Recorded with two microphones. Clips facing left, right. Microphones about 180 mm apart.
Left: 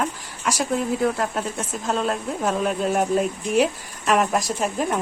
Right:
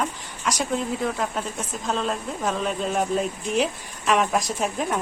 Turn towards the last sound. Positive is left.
turn(degrees=0)  # may be behind; listen again after turning